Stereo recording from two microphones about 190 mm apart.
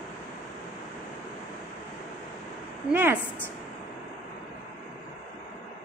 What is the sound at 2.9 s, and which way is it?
Speech, 10° right (ahead or behind).